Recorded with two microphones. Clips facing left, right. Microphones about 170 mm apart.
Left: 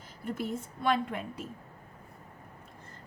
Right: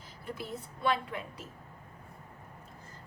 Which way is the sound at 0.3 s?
45° left (ahead or behind).